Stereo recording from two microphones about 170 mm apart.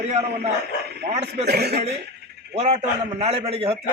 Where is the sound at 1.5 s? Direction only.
70° right (ahead or behind).